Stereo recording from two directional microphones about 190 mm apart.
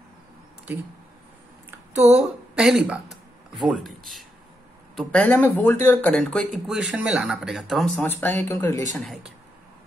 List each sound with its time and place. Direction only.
2.1 s speech: 5° right (ahead or behind); by 9.0 s 15° left (ahead or behind)
9.0 s speech: centre (ahead or behind)